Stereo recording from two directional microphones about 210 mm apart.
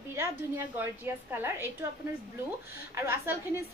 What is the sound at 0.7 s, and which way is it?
A woman's voice, 10° right (ahead or behind).